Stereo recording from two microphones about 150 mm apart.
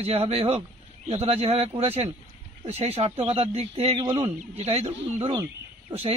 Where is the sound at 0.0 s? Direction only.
45° right (ahead or behind).